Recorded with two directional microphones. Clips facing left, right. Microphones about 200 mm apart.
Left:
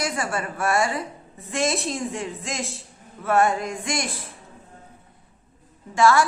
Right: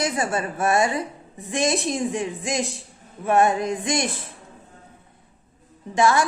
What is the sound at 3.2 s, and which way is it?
Female singing, 20° right (ahead or behind).